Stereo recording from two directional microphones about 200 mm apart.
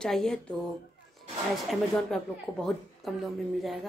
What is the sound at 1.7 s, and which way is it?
A woman's voice, 5° left (ahead or behind).